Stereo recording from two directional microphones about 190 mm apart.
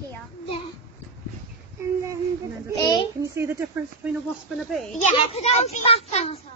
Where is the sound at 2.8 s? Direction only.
20° left (ahead or behind).